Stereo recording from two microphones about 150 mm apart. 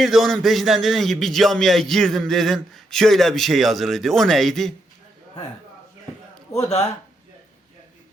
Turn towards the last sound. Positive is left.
turn(degrees=45)  # may be behind; listen again after turning